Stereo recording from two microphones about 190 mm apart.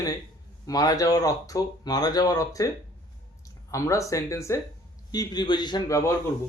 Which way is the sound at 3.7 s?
15° left (ahead or behind).